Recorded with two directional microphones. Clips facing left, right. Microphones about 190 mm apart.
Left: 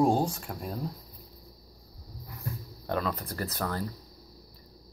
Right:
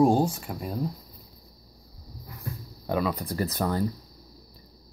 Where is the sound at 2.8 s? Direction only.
10° right (ahead or behind).